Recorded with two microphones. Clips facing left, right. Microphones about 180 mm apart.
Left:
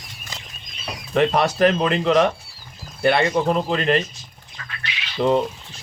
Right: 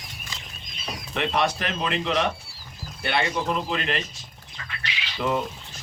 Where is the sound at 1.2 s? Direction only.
40° left (ahead or behind).